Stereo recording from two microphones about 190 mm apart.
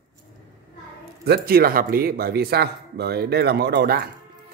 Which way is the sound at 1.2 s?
55° right (ahead or behind).